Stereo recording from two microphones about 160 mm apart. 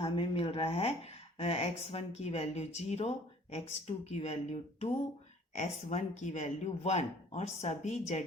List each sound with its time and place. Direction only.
0.0 s speech: 35° left (ahead or behind)